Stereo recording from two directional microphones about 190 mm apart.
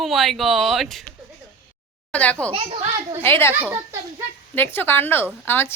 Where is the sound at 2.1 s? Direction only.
10° left (ahead or behind).